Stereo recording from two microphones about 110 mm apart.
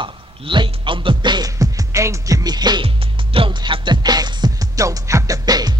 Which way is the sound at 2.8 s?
55° right (ahead or behind).